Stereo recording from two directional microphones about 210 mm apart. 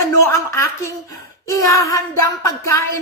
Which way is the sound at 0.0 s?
15° left (ahead or behind).